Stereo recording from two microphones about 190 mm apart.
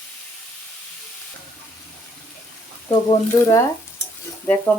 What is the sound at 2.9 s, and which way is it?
Speech, 20° left (ahead or behind).